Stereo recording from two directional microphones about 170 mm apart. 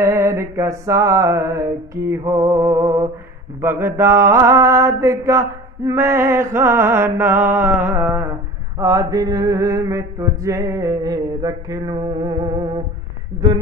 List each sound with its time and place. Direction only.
0.0 s music: 15° right (ahead or behind)
8.7 s mantra: 20° right (ahead or behind)